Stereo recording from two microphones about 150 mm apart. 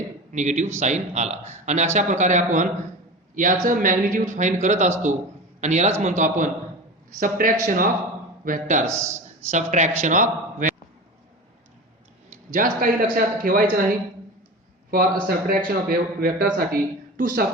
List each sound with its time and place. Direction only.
0.3 s a man's voice: 55° right (ahead or behind)
8.9 s a man's voice: 20° right (ahead or behind)
9.5 s a man's voice: 55° right (ahead or behind)
12.5 s a man's voice: 70° right (ahead or behind)
14.8 s a man's voice: 75° right (ahead or behind)